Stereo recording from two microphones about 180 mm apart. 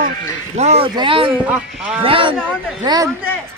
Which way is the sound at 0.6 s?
35° right (ahead or behind).